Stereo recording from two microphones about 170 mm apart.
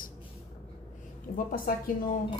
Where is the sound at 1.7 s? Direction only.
60° left (ahead or behind).